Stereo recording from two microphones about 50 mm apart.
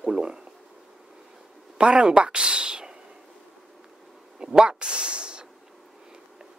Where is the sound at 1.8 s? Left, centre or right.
Centre.